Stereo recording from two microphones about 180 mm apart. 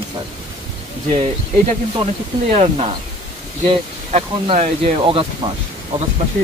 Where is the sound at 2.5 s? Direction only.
35° right (ahead or behind).